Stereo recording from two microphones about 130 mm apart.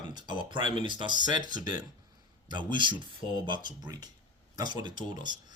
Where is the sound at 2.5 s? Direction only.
35° right (ahead or behind).